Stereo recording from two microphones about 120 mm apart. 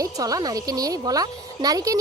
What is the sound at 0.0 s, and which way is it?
Speech, 30° right (ahead or behind).